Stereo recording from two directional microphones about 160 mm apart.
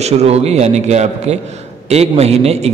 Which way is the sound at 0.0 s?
40° right (ahead or behind).